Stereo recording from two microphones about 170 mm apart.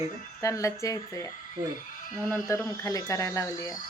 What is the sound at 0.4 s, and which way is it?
Speech, 20° left (ahead or behind).